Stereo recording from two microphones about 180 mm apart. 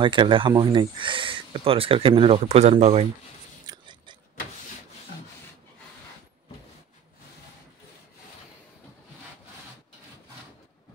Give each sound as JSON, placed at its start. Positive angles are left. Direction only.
{"t": 0.0, "sound": "speech", "side_deg": -25}
{"t": 3.6, "sound": "chewing", "side_deg": -25}